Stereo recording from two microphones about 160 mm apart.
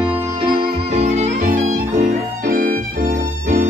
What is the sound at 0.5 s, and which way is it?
Music, 45° right (ahead or behind).